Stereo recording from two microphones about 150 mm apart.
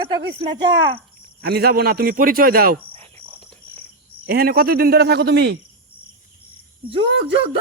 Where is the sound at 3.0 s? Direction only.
40° right (ahead or behind).